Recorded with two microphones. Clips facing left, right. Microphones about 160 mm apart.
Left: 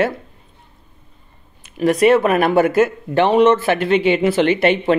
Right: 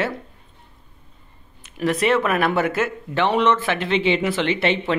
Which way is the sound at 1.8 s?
45° left (ahead or behind).